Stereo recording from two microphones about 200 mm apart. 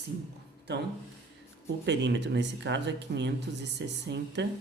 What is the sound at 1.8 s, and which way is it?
Speech, 60° right (ahead or behind).